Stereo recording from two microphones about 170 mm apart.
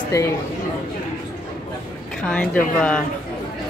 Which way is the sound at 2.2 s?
10° left (ahead or behind).